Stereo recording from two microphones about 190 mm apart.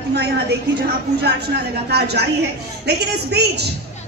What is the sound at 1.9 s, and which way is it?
Speech, 60° right (ahead or behind).